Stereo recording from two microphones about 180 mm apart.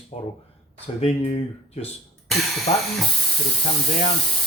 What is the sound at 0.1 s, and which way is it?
Speech, 35° left (ahead or behind).